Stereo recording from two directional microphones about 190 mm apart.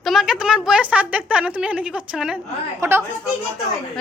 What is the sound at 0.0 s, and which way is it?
A woman's voice, centre (ahead or behind).